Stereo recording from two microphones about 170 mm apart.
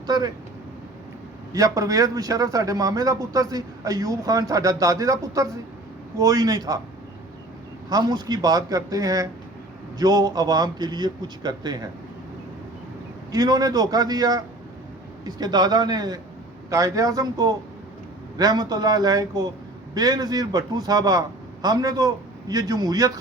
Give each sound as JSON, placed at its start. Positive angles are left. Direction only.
{"t": 1.5, "sound": "speech", "side_deg": -20}
{"t": 7.9, "sound": "speech", "side_deg": -25}
{"t": 13.3, "sound": "speech", "side_deg": -20}